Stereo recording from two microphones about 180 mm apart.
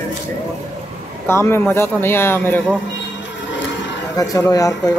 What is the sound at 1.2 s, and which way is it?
A man's voice, 15° left (ahead or behind).